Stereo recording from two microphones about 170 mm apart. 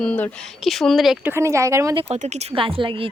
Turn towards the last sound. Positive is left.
turn(degrees=-30)  # may be behind; listen again after turning